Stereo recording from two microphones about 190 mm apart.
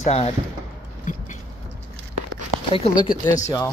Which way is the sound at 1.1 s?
45° left (ahead or behind).